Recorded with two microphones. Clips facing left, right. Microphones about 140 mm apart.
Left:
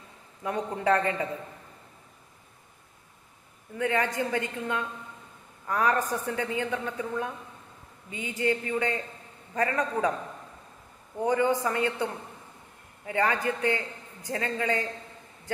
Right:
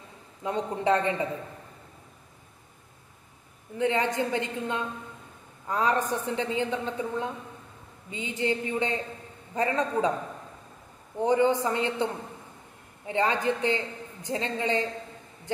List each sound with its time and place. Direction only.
0.4 s a man's voice: 20° right (ahead or behind)
3.7 s a man's voice: 25° right (ahead or behind)
11.1 s a man's voice: 25° right (ahead or behind)